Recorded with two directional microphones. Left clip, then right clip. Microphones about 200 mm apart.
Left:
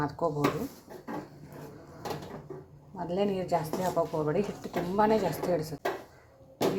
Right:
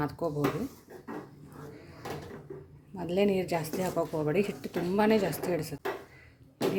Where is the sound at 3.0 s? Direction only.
20° right (ahead or behind).